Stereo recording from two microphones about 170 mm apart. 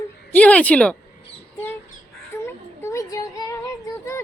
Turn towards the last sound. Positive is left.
turn(degrees=20)  # may be behind; listen again after turning